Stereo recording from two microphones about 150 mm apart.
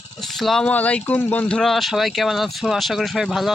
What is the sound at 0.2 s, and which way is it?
Speech, centre (ahead or behind).